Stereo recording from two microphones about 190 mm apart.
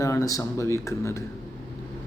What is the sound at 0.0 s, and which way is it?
A man's voice, 15° left (ahead or behind).